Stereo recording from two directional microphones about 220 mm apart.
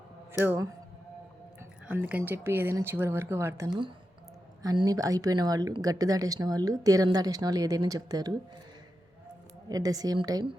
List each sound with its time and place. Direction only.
0.4 s speech: 10° right (ahead or behind)
1.9 s speech: 5° right (ahead or behind)
9.6 s speech: 15° right (ahead or behind)